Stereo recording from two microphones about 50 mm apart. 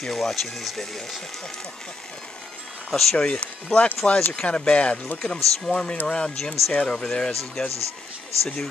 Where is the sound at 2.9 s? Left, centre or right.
Centre.